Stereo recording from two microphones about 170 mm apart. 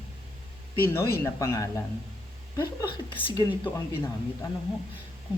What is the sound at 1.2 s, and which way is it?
Speech, 20° left (ahead or behind).